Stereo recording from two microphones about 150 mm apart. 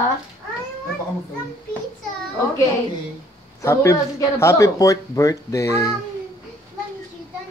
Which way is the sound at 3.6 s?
20° left (ahead or behind).